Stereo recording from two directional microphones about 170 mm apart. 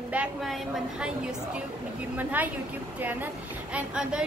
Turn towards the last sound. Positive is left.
turn(degrees=-5)  # may be behind; listen again after turning